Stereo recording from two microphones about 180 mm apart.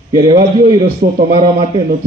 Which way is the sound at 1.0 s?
50° right (ahead or behind).